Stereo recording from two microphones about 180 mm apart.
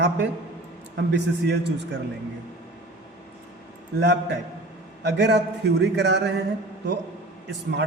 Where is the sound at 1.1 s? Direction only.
70° right (ahead or behind).